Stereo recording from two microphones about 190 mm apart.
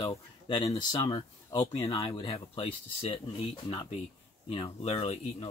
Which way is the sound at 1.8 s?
30° left (ahead or behind).